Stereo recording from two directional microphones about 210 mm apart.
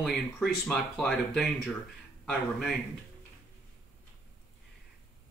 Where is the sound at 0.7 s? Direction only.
Centre (ahead or behind).